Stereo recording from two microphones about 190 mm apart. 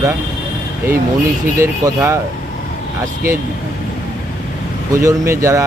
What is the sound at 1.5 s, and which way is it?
Speech, 15° right (ahead or behind).